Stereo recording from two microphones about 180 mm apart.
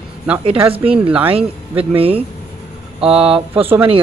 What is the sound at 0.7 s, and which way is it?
Speech, 30° right (ahead or behind).